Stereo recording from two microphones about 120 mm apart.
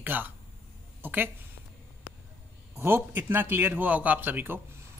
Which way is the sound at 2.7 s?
20° right (ahead or behind).